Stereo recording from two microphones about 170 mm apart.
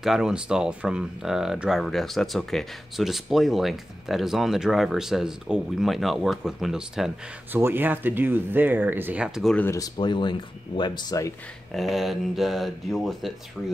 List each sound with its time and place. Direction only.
0.0 s speech: 5° right (ahead or behind)
9.7 s speech: 25° left (ahead or behind)
11.7 s speech: centre (ahead or behind)